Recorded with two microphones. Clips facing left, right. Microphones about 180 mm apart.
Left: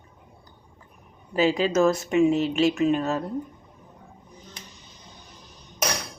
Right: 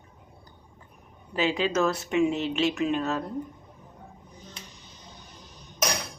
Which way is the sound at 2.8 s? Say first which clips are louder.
Left 4 dB; 5° left (ahead or behind).